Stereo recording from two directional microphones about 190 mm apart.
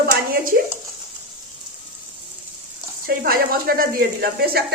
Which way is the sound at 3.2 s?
50° right (ahead or behind).